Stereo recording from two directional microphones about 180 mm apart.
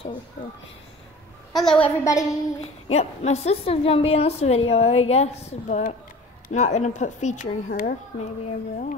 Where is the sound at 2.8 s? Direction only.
35° left (ahead or behind).